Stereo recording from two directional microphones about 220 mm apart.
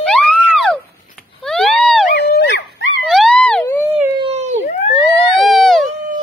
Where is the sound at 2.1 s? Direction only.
50° left (ahead or behind).